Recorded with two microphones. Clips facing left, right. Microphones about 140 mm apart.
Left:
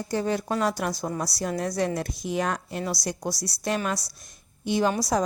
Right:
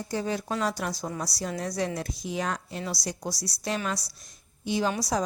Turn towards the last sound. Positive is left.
turn(degrees=50)  # may be behind; listen again after turning